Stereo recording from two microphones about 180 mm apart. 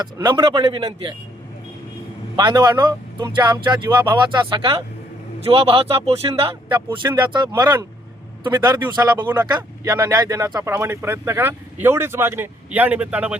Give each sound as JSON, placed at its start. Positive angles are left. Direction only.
{"t": 0.0, "sound": "speech", "side_deg": -25}
{"t": 2.3, "sound": "a man's voice", "side_deg": -25}
{"t": 9.1, "sound": "speech", "side_deg": -10}
{"t": 9.5, "sound": "speech", "side_deg": -20}